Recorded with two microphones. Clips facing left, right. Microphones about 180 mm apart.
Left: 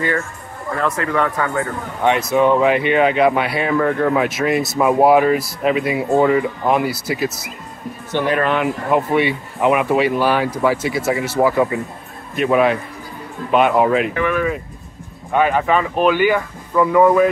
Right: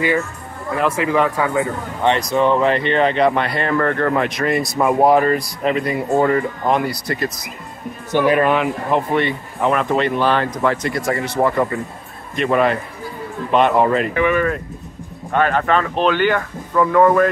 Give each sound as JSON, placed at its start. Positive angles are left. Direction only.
{"t": 0.7, "sound": "speech", "side_deg": -10}
{"t": 2.0, "sound": "speech", "side_deg": 5}
{"t": 8.1, "sound": "speech", "side_deg": -10}
{"t": 8.9, "sound": "speech", "side_deg": 5}